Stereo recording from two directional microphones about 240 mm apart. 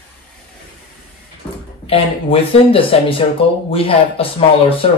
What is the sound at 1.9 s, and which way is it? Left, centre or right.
Speech, left.